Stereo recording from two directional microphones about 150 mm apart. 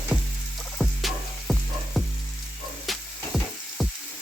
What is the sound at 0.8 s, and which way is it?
Music, centre (ahead or behind).